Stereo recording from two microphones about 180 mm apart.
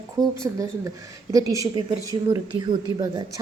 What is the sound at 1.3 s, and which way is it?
A woman's voice, 20° right (ahead or behind).